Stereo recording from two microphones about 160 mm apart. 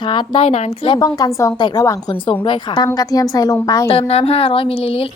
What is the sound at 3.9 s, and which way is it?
A woman's voice, 40° left (ahead or behind).